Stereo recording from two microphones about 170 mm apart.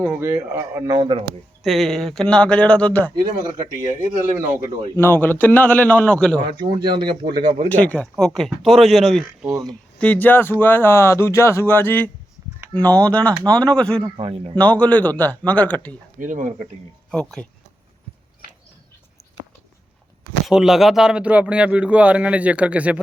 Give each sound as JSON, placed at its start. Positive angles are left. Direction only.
{"t": 0.2, "sound": "speech", "side_deg": -15}
{"t": 0.9, "sound": "speech", "side_deg": -30}
{"t": 1.6, "sound": "speech", "side_deg": 0}
{"t": 4.4, "sound": "speech", "side_deg": -20}
{"t": 4.9, "sound": "speech", "side_deg": 10}
{"t": 6.4, "sound": "speech", "side_deg": -30}
{"t": 7.7, "sound": "speech", "side_deg": 10}
{"t": 14.2, "sound": "speech", "side_deg": -30}
{"t": 14.5, "sound": "speech", "side_deg": 5}
{"t": 16.2, "sound": "speech", "side_deg": -45}
{"t": 17.1, "sound": "speech", "side_deg": 5}
{"t": 20.5, "sound": "speech", "side_deg": 0}